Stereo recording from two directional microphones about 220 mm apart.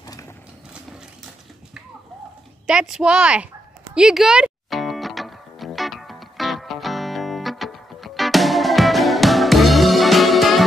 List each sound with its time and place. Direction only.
0.0 s a sound: 15° left (ahead or behind)
2.6 s a woman's voice: 5° right (ahead or behind)
3.9 s music: 5° right (ahead or behind)